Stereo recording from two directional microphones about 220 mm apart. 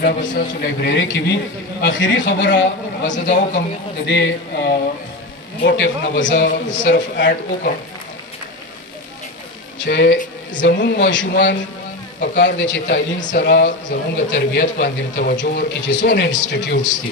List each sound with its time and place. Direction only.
0.0 s a man's voice: 35° left (ahead or behind)
0.7 s speech: 50° left (ahead or behind)
3.1 s a man's voice: 35° left (ahead or behind)
3.5 s a man's voice: 50° left (ahead or behind)
9.8 s speech: 50° left (ahead or behind)
13.5 s speech: 50° left (ahead or behind)